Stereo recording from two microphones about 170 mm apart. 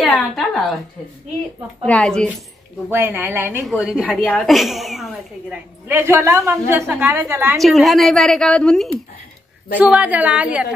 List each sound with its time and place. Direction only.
0.0 s a sound: centre (ahead or behind)
1.9 s a woman's voice: 5° left (ahead or behind)
2.9 s a woman's voice: 10° right (ahead or behind)
4.2 s a woman's voice: 5° left (ahead or behind)
5.9 s a woman's voice: 15° right (ahead or behind)
7.5 s a woman's voice: centre (ahead or behind)